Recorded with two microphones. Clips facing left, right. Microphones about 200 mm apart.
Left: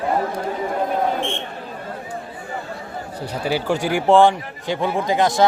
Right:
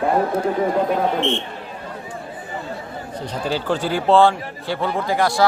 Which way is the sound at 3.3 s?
10° left (ahead or behind).